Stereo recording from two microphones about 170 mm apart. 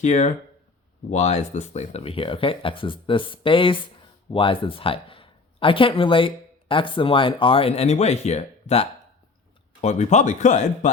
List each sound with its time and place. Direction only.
0.0 s speech: 45° left (ahead or behind)